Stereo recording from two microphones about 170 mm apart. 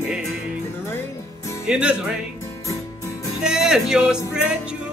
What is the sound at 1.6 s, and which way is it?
Speech, 5° right (ahead or behind).